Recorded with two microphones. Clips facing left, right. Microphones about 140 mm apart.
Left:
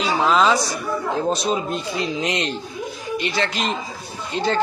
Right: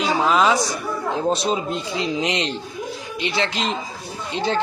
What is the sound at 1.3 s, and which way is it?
A man's voice, 25° right (ahead or behind).